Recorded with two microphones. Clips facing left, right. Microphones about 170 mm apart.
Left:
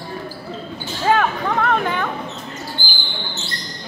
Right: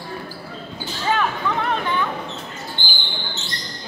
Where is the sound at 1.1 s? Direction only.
50° left (ahead or behind).